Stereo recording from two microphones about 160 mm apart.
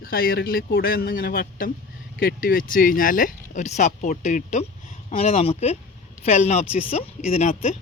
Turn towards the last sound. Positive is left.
turn(degrees=45)  # may be behind; listen again after turning